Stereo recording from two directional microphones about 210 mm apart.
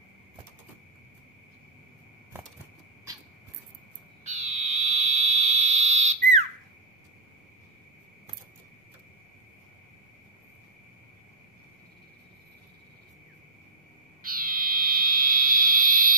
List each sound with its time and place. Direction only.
4.2 s frog: 30° right (ahead or behind)
14.2 s frog: 40° right (ahead or behind)